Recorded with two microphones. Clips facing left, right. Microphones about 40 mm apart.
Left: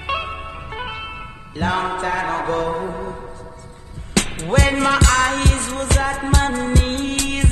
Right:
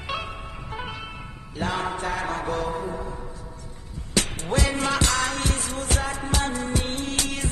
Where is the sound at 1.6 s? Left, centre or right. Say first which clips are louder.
Left 6 dB; left.